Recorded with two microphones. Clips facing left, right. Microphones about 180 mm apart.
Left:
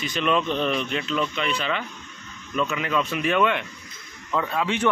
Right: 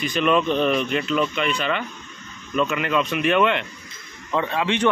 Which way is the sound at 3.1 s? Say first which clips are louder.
Right 3 dB; centre (ahead or behind).